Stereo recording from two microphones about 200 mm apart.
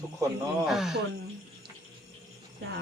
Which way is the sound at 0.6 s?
Centre (ahead or behind).